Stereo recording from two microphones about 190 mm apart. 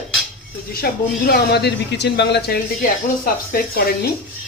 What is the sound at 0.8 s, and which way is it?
Speech, 50° left (ahead or behind).